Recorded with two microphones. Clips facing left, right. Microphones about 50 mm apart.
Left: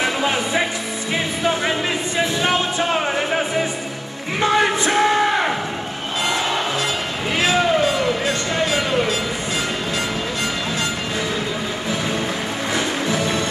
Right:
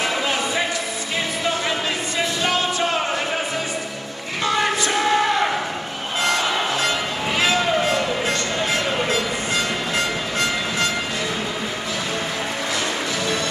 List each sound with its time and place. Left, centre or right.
4.4 s music: left